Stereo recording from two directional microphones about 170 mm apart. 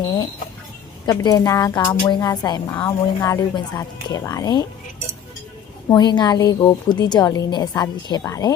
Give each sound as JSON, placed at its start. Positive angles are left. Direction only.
{"t": 0.0, "sound": "a woman's voice", "side_deg": 20}
{"t": 5.9, "sound": "a woman's voice", "side_deg": 25}